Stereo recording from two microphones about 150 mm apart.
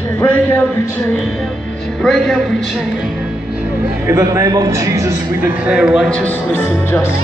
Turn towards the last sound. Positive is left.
turn(degrees=15)  # may be behind; listen again after turning